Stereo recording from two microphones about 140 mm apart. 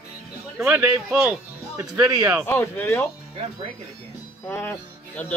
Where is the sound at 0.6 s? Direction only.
15° right (ahead or behind).